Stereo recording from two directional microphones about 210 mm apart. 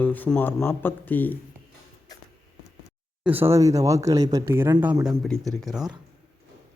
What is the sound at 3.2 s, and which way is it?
Speech, 10° right (ahead or behind).